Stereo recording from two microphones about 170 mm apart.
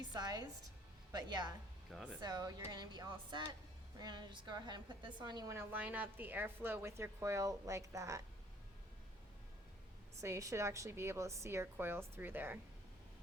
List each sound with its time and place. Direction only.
0.0 s music: 25° right (ahead or behind)
1.1 s speech: 25° right (ahead or behind)
1.9 s speech: centre (ahead or behind)
2.2 s a woman's voice: 25° right (ahead or behind)
10.2 s a woman's voice: 20° right (ahead or behind)